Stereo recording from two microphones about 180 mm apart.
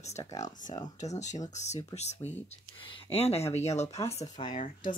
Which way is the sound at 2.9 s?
35° left (ahead or behind).